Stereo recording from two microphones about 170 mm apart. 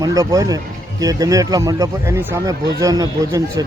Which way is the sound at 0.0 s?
20° right (ahead or behind).